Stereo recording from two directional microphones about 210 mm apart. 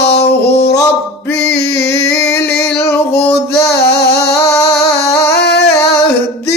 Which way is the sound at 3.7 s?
50° left (ahead or behind).